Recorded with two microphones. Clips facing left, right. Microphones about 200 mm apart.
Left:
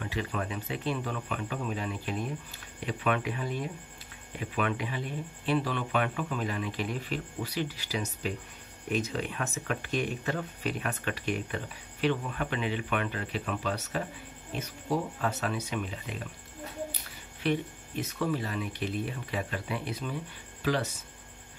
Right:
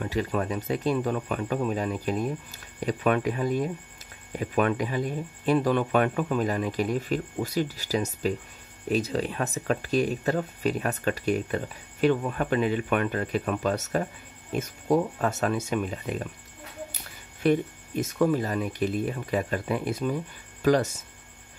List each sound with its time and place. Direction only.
0.0 s speech: 40° right (ahead or behind)
17.4 s speech: 45° right (ahead or behind)